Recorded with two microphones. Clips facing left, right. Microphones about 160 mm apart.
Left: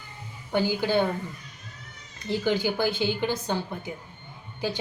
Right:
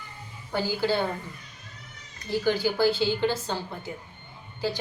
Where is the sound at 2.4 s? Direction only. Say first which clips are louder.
Right 2 dB; 20° left (ahead or behind).